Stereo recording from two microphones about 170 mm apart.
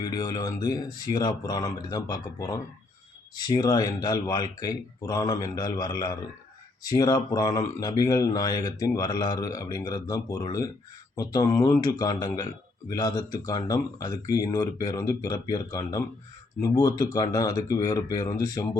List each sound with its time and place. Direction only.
0.0 s speech: 25° left (ahead or behind)